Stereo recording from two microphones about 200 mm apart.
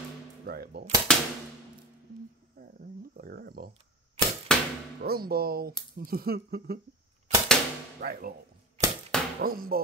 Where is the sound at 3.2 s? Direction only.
50° right (ahead or behind).